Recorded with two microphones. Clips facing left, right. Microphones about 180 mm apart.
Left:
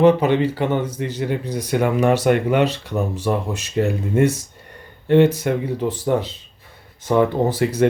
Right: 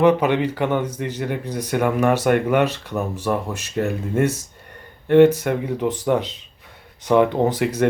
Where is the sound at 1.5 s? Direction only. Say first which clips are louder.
Left 1 dB; 10° left (ahead or behind).